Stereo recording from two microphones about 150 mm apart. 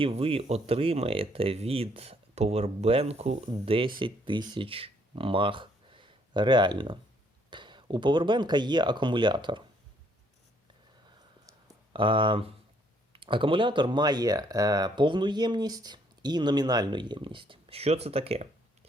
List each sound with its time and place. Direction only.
0.0 s speech: 40° right (ahead or behind)
11.4 s a sound: 30° right (ahead or behind)
13.1 s speech: 35° right (ahead or behind)